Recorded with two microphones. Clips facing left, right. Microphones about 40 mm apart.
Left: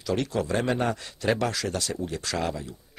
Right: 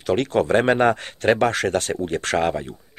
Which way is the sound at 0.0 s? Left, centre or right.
Right.